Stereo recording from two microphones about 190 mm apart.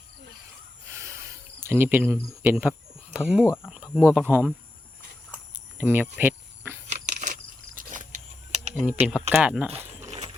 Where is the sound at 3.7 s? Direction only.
5° right (ahead or behind).